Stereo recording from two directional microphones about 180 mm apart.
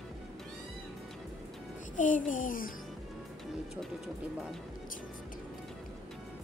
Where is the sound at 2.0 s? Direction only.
45° left (ahead or behind).